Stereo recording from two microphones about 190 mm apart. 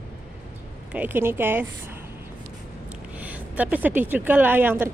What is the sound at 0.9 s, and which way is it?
Speech, 10° right (ahead or behind).